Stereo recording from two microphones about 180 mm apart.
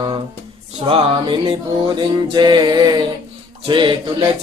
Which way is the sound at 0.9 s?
30° right (ahead or behind).